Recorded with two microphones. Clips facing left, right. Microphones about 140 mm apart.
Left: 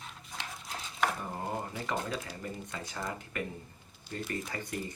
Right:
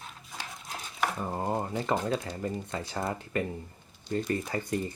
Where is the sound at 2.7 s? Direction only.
30° right (ahead or behind).